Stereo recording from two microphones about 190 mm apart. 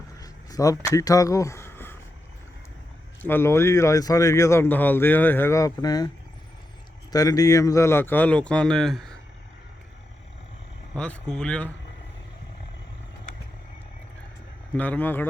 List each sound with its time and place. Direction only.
0.2 s a sound: 20° left (ahead or behind)
3.2 s speech: 10° left (ahead or behind)
7.1 s speech: 20° left (ahead or behind); by 9.1 s centre (ahead or behind)
10.9 s speech: 5° left (ahead or behind)
14.8 s speech: 10° left (ahead or behind)